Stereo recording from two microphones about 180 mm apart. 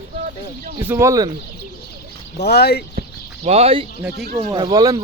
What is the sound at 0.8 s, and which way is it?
Speech, 15° right (ahead or behind).